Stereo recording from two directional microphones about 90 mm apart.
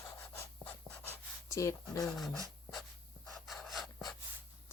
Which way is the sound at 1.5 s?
35° left (ahead or behind).